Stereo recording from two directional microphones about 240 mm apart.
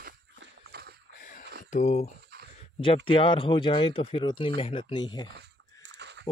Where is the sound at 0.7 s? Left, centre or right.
Right.